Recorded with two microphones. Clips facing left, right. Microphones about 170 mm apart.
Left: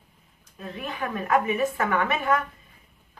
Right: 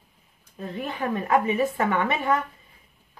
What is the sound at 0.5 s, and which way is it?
Speech, 30° right (ahead or behind).